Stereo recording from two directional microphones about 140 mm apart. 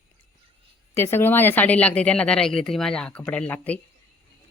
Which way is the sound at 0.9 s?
15° left (ahead or behind).